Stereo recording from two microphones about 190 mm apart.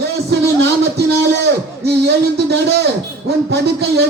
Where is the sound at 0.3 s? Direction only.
60° right (ahead or behind).